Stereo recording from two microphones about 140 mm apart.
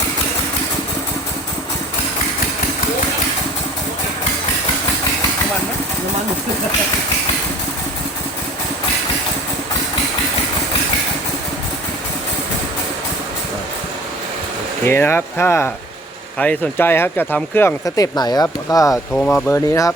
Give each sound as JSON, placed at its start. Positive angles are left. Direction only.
{"t": 14.8, "sound": "speech", "side_deg": 15}
{"t": 19.1, "sound": "speech", "side_deg": 5}
{"t": 19.5, "sound": "speech", "side_deg": 20}